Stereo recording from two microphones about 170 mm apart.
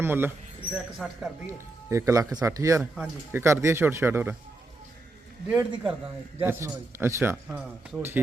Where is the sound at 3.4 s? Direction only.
15° right (ahead or behind).